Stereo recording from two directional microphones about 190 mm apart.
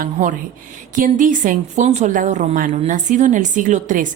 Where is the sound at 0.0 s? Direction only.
45° right (ahead or behind).